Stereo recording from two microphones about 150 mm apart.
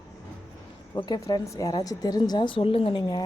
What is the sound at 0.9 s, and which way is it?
A woman's voice, 30° left (ahead or behind).